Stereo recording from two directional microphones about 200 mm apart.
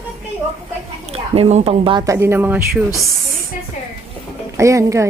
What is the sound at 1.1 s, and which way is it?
Speech, 30° right (ahead or behind).